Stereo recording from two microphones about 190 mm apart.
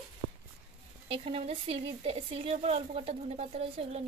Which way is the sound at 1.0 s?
30° right (ahead or behind).